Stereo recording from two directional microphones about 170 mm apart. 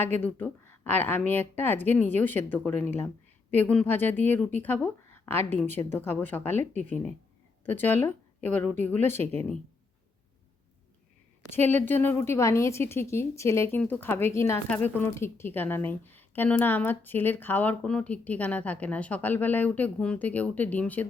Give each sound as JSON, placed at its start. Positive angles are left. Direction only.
{"t": 0.2, "sound": "speech", "side_deg": 10}
{"t": 9.2, "sound": "speech", "side_deg": -40}
{"t": 11.5, "sound": "speech", "side_deg": 10}